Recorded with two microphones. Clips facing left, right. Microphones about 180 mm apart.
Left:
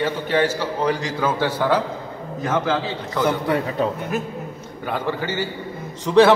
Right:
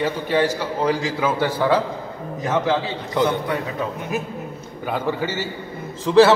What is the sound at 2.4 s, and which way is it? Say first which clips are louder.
Speech: right 1 dB; 20° right (ahead or behind).